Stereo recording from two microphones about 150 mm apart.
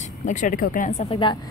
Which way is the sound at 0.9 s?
50° left (ahead or behind).